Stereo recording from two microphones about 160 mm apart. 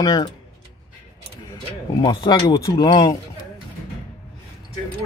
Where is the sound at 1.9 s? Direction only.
25° left (ahead or behind).